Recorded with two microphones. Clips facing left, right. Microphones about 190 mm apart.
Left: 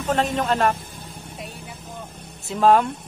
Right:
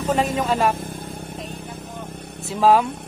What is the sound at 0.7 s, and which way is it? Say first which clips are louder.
Music: right 8 dB; 55° right (ahead or behind).